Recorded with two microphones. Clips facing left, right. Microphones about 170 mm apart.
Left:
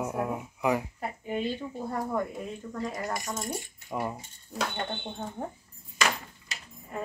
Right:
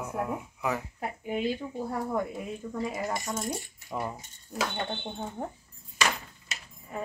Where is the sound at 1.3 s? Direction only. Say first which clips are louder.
Right 1 dB; 10° right (ahead or behind).